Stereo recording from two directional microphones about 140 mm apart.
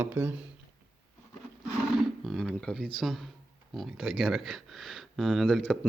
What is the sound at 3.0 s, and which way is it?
Speech, centre (ahead or behind).